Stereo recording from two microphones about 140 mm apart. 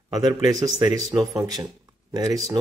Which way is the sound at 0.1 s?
25° right (ahead or behind).